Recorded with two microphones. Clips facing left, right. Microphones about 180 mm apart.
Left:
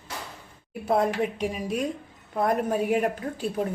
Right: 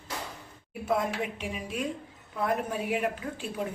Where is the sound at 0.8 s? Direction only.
35° left (ahead or behind).